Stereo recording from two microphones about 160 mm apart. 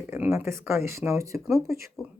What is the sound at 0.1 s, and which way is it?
Speech, 10° right (ahead or behind).